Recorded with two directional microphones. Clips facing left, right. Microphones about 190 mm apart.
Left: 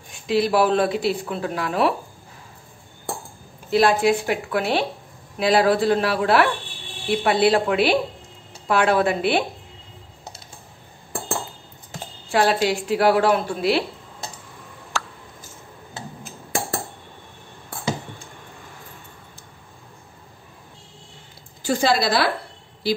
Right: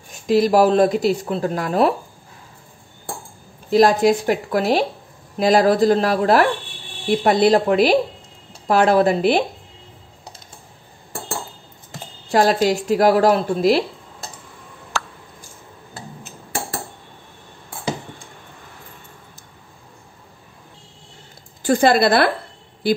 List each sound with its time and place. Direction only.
0.1 s a woman's voice: 40° right (ahead or behind)
3.7 s a woman's voice: 40° right (ahead or behind)
12.3 s a woman's voice: 40° right (ahead or behind)
21.6 s a woman's voice: 55° right (ahead or behind)